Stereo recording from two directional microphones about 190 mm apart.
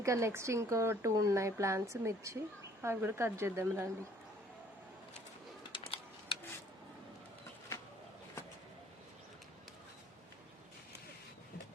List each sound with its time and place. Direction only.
0.0 s speech: 15° right (ahead or behind)
5.7 s typing: 30° left (ahead or behind)